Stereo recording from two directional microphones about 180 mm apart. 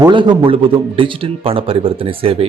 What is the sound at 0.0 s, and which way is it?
A man's voice, 25° right (ahead or behind).